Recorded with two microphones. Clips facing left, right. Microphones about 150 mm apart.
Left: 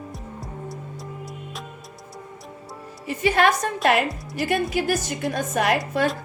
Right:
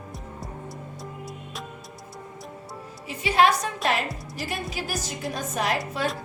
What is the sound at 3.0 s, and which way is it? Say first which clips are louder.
A woman's voice: left 1 dB; 50° left (ahead or behind).